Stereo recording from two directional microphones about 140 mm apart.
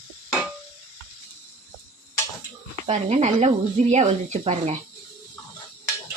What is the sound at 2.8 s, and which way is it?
Speech, 55° right (ahead or behind).